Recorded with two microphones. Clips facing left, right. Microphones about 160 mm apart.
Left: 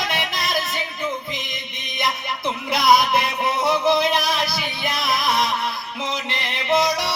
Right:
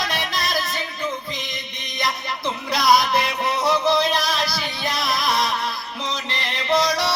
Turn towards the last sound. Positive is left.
turn(degrees=20)  # may be behind; listen again after turning